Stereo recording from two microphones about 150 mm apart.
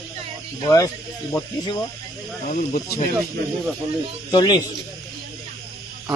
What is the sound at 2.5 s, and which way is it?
Speech, 60° left (ahead or behind).